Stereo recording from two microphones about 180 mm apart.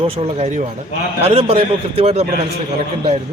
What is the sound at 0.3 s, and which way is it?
A man's voice, 35° right (ahead or behind).